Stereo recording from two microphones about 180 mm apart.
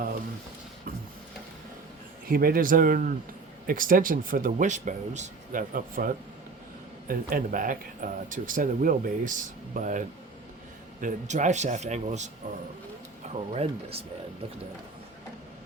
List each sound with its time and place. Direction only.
2.2 s speech: 55° right (ahead or behind)
13.5 s speech: 35° right (ahead or behind)